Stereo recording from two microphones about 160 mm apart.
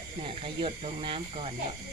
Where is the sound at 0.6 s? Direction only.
35° right (ahead or behind).